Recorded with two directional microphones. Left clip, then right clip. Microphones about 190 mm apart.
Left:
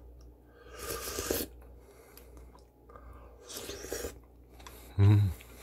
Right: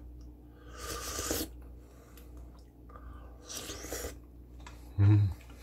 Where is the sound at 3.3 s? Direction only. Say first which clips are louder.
Even; 40° left (ahead or behind).